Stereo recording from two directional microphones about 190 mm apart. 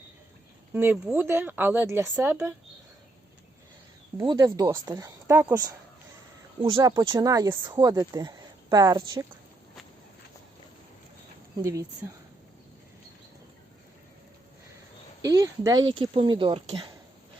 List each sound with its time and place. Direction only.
0.7 s speech: 10° right (ahead or behind)
4.2 s speech: 20° right (ahead or behind)
11.5 s speech: 20° right (ahead or behind)
15.2 s speech: 20° right (ahead or behind)